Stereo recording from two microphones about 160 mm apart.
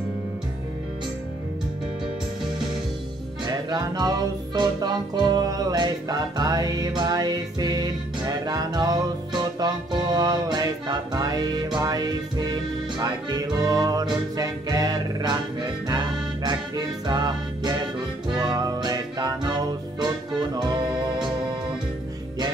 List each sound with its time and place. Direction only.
3.4 s music: 25° right (ahead or behind)